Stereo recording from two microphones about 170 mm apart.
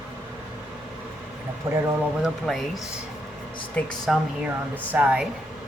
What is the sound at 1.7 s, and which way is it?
Speech, 15° right (ahead or behind).